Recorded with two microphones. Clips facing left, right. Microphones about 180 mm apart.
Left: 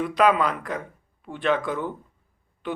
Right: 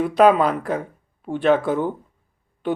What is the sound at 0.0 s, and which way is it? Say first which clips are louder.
Speech: right 5 dB; 35° right (ahead or behind).